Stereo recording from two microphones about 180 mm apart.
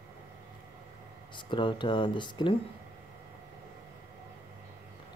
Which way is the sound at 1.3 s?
25° left (ahead or behind).